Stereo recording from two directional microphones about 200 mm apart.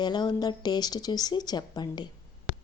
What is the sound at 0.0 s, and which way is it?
A woman's voice, 20° left (ahead or behind).